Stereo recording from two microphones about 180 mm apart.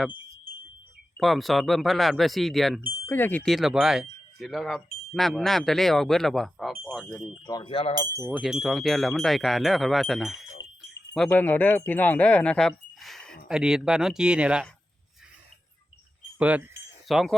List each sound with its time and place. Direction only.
1.2 s speech: centre (ahead or behind)
7.4 s speech: 25° left (ahead or behind)
8.3 s speech: centre (ahead or behind)
16.4 s wind chime: 10° right (ahead or behind)